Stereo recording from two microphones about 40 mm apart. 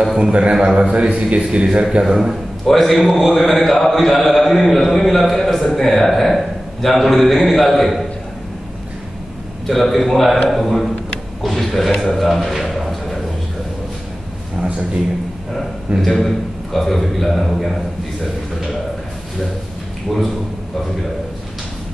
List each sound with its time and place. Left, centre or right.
0.0 s a man's voice: centre
2.0 s a man's voice: centre
2.6 s a man's voice: centre
9.7 s a man's voice: centre
11.4 s a sound: centre
12.0 s speech: centre
16.0 s a man's voice: centre
20.1 s a man's voice: centre